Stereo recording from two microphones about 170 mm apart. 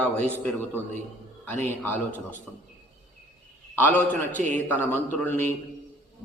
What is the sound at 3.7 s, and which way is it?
A man's voice, 10° left (ahead or behind).